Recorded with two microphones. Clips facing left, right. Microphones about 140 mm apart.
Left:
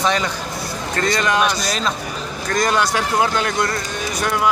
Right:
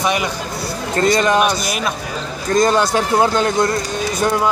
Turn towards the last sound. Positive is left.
turn(degrees=-25)  # may be behind; listen again after turning